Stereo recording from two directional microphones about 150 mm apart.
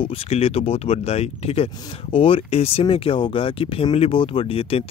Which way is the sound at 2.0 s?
35° left (ahead or behind).